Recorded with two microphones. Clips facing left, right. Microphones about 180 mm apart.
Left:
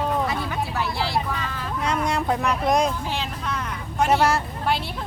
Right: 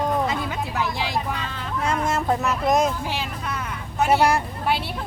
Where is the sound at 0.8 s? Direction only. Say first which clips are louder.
Right 2 dB; 15° right (ahead or behind).